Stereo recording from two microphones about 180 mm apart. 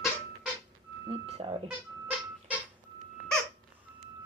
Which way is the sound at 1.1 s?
35° right (ahead or behind).